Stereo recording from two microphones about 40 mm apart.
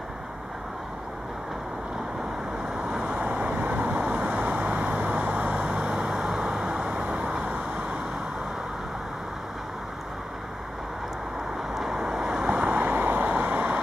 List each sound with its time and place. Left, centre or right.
3.1 s vehicle: right
11.7 s vehicle: centre; by 13.7 s right